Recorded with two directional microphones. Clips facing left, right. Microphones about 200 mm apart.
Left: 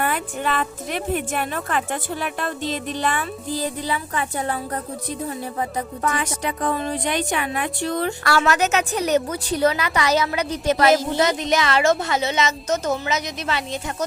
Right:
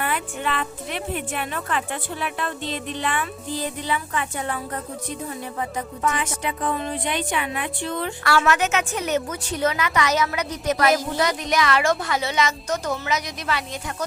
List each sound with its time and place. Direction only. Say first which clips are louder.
0.0 s speech: left 2 dB; 45° left (ahead or behind); by 13.7 s 25° left (ahead or behind)